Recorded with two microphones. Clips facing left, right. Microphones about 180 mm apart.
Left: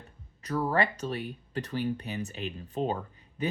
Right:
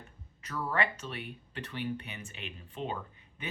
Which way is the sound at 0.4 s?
40° left (ahead or behind).